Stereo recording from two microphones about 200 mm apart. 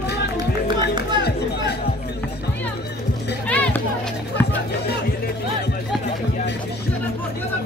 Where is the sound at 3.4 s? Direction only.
5° left (ahead or behind).